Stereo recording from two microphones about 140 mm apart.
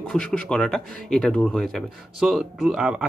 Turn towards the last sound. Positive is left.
turn(degrees=-5)  # may be behind; listen again after turning